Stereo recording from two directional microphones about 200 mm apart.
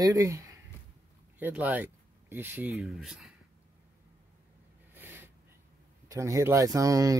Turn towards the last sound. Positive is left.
turn(degrees=-15)  # may be behind; listen again after turning